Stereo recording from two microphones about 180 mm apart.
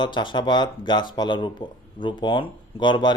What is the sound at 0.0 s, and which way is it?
Speech, 25° left (ahead or behind).